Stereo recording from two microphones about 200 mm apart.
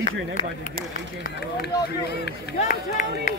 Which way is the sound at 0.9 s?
50° left (ahead or behind).